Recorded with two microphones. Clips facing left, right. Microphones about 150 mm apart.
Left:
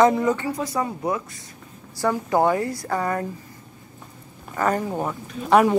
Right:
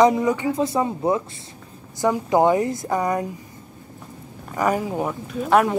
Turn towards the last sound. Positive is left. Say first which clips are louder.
# left 1 dB
turn(degrees=0)  # may be behind; listen again after turning